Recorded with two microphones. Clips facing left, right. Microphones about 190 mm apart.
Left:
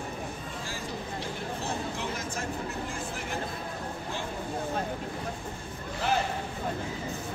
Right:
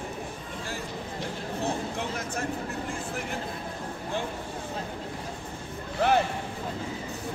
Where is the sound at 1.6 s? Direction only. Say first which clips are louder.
Right 6 dB; 60° right (ahead or behind).